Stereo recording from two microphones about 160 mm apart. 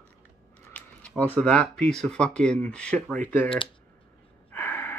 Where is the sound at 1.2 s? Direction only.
10° left (ahead or behind).